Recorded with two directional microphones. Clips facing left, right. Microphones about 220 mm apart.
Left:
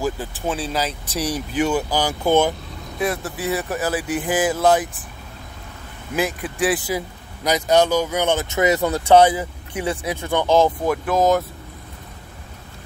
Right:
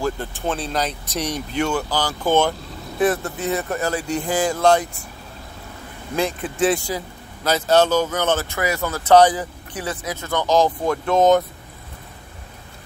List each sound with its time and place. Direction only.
0.0 s speech: 5° left (ahead or behind)
6.1 s speech: 5° left (ahead or behind)